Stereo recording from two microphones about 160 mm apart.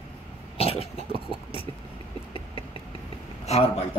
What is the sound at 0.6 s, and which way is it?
Cough, 40° left (ahead or behind).